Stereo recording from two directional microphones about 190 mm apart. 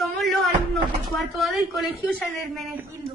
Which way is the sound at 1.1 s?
Centre (ahead or behind).